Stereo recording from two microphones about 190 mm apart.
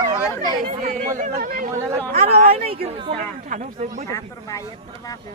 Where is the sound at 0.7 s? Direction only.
40° right (ahead or behind).